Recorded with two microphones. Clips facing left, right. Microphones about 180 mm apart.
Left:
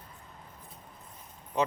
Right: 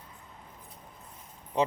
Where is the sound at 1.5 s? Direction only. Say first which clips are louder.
Right 2 dB; 30° right (ahead or behind).